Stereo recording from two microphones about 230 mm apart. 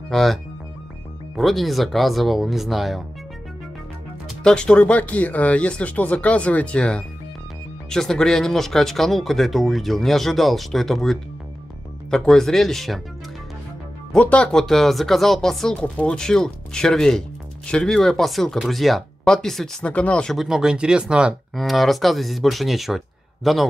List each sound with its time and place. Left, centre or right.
0.1 s speech: centre
4.4 s speech: centre
14.1 s speech: centre